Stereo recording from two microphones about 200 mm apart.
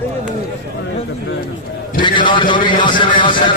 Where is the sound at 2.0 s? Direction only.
25° left (ahead or behind).